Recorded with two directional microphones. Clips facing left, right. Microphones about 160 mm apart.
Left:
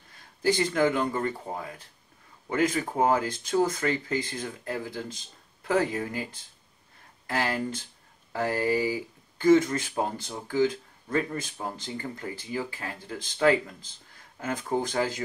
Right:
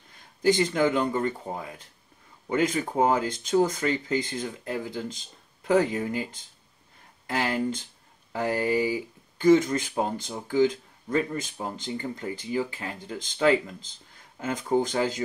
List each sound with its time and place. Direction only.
0.4 s speech: 20° right (ahead or behind)